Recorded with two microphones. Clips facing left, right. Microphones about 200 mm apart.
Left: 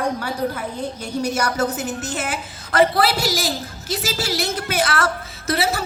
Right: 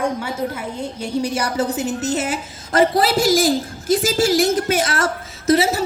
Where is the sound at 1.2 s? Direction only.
30° right (ahead or behind).